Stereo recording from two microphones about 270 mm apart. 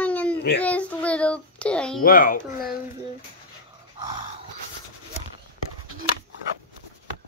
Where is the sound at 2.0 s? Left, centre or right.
Left.